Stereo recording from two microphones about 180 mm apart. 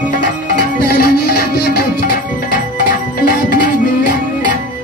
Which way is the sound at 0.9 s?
60° left (ahead or behind).